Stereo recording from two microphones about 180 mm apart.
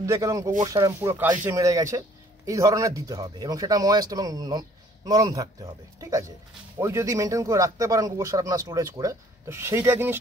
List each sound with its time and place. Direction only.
0.0 s speech: 15° right (ahead or behind)